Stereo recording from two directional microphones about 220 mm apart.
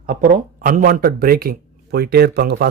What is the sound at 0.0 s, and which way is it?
A man's voice, 40° right (ahead or behind).